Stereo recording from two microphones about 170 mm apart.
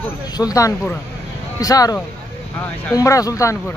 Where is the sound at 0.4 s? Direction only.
20° left (ahead or behind).